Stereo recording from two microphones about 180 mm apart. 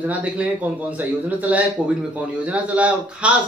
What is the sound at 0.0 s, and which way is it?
A man's voice, 10° right (ahead or behind).